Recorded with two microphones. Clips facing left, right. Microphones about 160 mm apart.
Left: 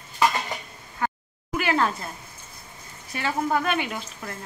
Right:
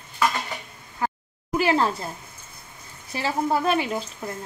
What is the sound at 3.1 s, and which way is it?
Speech, 30° right (ahead or behind).